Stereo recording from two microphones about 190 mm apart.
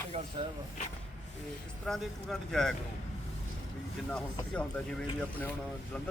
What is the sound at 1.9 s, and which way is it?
Speech, centre (ahead or behind).